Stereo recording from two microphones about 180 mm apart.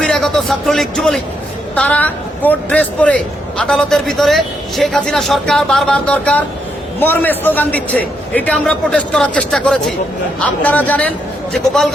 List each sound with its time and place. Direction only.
0.0 s a man's voice: 5° left (ahead or behind)